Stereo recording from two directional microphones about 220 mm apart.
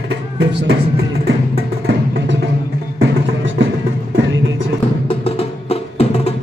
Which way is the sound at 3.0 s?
60° right (ahead or behind).